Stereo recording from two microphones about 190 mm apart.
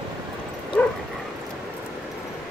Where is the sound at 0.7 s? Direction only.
10° left (ahead or behind).